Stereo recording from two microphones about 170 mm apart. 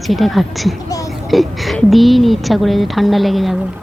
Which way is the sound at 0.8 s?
20° left (ahead or behind).